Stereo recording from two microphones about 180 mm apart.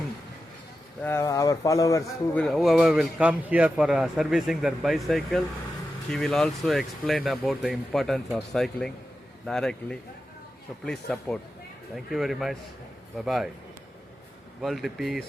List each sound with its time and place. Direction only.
1.0 s a man's voice: 15° left (ahead or behind)
2.4 s a man's voice: centre (ahead or behind)
14.6 s a man's voice: centre (ahead or behind)